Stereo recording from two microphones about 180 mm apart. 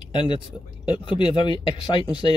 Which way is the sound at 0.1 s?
25° left (ahead or behind).